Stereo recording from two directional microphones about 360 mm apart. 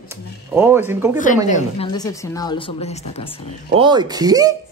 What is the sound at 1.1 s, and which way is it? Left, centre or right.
Speech, left.